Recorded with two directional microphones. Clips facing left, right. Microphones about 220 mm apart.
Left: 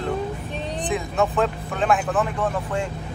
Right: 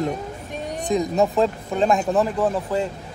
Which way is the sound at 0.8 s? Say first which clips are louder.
Right 4 dB; 40° right (ahead or behind).